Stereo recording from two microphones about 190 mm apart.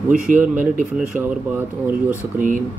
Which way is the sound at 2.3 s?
45° right (ahead or behind).